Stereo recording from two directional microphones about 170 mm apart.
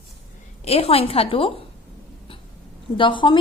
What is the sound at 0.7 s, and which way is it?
Speech, 35° left (ahead or behind).